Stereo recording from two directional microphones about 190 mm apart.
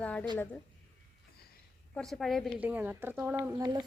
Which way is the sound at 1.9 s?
Centre (ahead or behind).